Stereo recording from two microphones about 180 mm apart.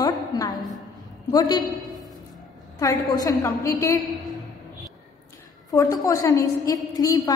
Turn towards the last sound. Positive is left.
turn(degrees=20)  # may be behind; listen again after turning